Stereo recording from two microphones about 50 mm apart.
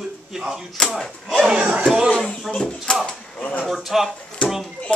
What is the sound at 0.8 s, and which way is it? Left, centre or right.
Speech, centre.